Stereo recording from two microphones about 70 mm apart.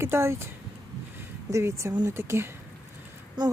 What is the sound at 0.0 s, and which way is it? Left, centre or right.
Speech, right.